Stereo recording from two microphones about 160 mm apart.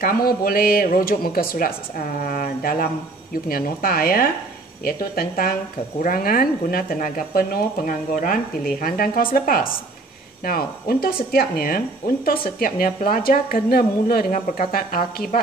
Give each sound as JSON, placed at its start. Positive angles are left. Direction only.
{"t": 0.0, "sound": "speech", "side_deg": 65}